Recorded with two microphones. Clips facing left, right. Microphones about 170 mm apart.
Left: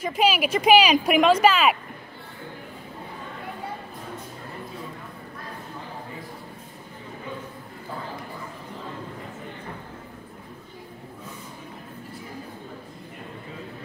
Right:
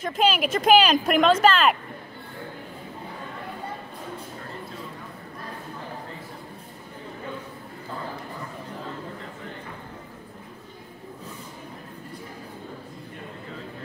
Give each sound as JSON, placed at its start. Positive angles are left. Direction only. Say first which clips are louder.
{"t": 0.0, "sound": "speech", "louder": "left 1 dB", "side_deg": 5}